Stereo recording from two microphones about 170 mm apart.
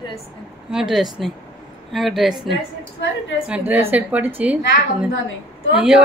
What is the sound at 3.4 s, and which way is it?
Speech, 10° right (ahead or behind).